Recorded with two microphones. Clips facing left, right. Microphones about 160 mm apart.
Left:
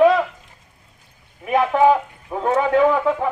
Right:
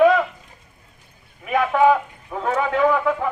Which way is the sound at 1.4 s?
25° left (ahead or behind).